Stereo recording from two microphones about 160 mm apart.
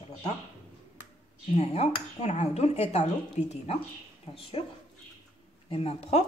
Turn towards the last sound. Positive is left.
turn(degrees=40)  # may be behind; listen again after turning